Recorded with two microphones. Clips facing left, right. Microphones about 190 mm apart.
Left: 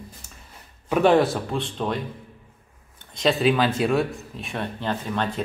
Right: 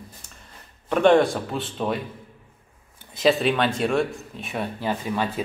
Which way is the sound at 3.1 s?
Centre (ahead or behind).